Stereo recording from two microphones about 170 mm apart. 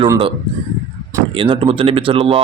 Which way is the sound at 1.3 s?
30° right (ahead or behind).